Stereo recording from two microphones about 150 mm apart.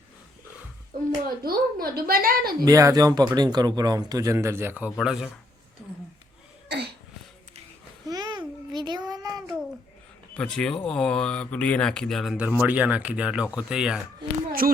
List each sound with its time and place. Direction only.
0.9 s a sound: 75° right (ahead or behind)
1.5 s a woman's voice: 80° right
2.6 s speech: 25° right (ahead or behind)
4.9 s speech: centre (ahead or behind)
8.0 s a sound: 25° right (ahead or behind)
10.3 s speech: 5° left (ahead or behind)
14.2 s speech: 30° right (ahead or behind)
14.6 s speech: 70° right (ahead or behind)